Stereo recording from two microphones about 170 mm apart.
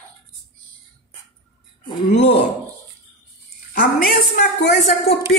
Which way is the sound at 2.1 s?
40° left (ahead or behind).